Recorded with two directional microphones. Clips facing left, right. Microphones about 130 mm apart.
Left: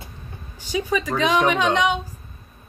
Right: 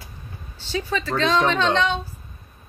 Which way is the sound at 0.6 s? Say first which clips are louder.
Left 3 dB; 15° left (ahead or behind).